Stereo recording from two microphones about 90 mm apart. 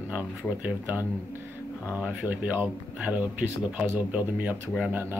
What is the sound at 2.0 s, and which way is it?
Speech, 20° right (ahead or behind).